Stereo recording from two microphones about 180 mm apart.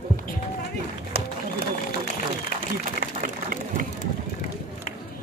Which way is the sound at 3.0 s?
55° right (ahead or behind).